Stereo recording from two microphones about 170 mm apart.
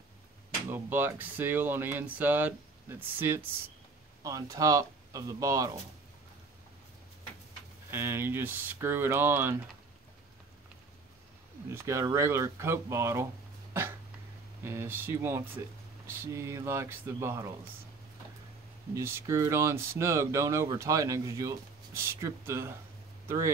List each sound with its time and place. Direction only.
0.7 s speech: 10° right (ahead or behind)
7.9 s speech: 15° right (ahead or behind)
11.7 s speech: 15° right (ahead or behind)
14.6 s speech: 15° right (ahead or behind)
18.9 s speech: 15° right (ahead or behind)